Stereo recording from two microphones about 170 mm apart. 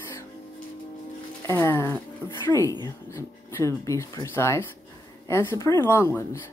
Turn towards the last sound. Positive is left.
turn(degrees=15)  # may be behind; listen again after turning